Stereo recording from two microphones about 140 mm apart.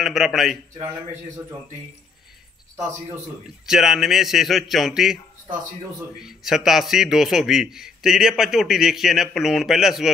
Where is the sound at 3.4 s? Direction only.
5° right (ahead or behind).